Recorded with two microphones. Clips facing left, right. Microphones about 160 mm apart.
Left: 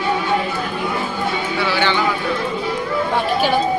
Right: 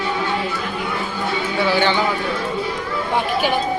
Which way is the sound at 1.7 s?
45° right (ahead or behind).